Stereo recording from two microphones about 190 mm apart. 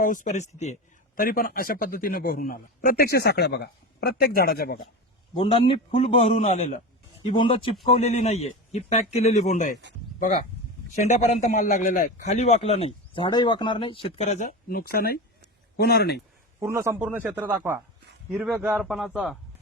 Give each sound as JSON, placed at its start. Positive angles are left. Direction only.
{"t": 0.0, "sound": "a man's voice", "side_deg": 45}
{"t": 1.2, "sound": "a man's voice", "side_deg": 50}
{"t": 5.4, "sound": "a man's voice", "side_deg": 30}
{"t": 7.3, "sound": "a man's voice", "side_deg": 25}
{"t": 10.9, "sound": "a man's voice", "side_deg": 35}
{"t": 16.6, "sound": "a man's voice", "side_deg": -15}